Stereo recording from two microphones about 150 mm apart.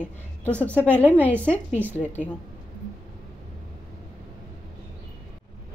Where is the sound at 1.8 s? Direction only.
10° right (ahead or behind).